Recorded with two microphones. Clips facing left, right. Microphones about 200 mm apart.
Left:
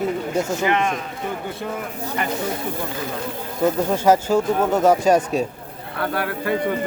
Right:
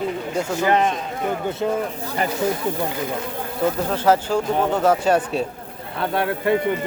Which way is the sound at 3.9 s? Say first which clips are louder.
Left 2 dB; 10° left (ahead or behind).